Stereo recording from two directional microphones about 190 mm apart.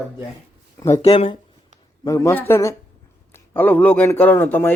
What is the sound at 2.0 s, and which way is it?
A woman's voice, 15° left (ahead or behind).